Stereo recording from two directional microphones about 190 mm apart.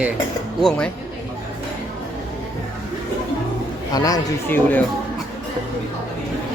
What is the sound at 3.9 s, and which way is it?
Speech, 20° left (ahead or behind).